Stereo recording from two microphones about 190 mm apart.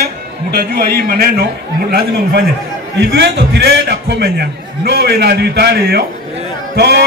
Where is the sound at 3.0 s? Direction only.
60° right (ahead or behind).